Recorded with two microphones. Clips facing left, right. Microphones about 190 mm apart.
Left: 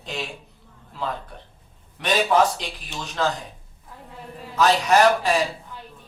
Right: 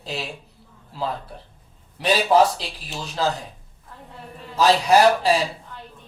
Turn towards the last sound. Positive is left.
turn(degrees=-35)  # may be behind; listen again after turning